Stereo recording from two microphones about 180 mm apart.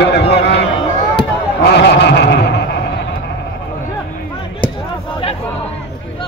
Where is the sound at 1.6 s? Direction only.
70° left (ahead or behind).